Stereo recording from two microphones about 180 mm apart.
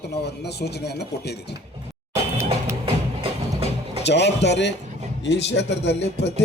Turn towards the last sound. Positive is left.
turn(degrees=75)  # may be behind; listen again after turning